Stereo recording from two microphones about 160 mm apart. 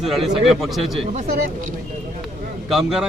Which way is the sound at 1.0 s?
45° right (ahead or behind).